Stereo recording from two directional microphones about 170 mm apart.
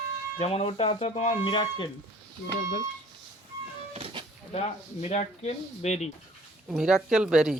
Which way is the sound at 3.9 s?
30° right (ahead or behind).